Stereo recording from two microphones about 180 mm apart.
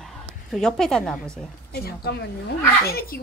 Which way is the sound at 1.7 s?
60° left (ahead or behind).